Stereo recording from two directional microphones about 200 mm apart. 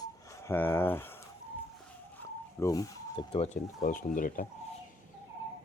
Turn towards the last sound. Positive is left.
turn(degrees=45)  # may be behind; listen again after turning